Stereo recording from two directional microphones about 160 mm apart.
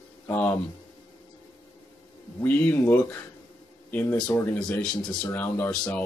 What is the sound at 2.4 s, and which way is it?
Speech, 10° left (ahead or behind).